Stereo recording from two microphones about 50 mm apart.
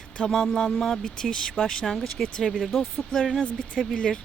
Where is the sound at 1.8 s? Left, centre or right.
Centre.